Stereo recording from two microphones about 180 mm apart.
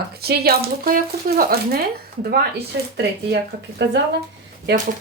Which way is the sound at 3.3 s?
65° right (ahead or behind).